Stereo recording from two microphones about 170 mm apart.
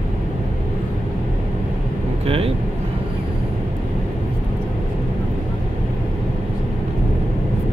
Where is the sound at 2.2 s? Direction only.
35° right (ahead or behind).